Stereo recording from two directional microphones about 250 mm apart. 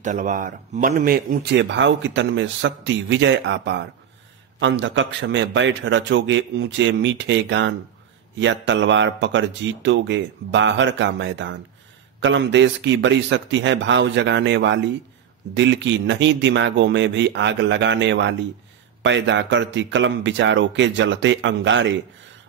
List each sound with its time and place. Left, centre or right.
0.0 s speech: right